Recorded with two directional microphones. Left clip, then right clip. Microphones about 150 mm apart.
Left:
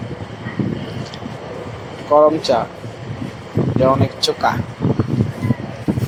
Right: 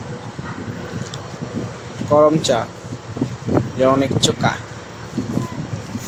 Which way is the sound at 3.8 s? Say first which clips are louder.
Even; 20° right (ahead or behind).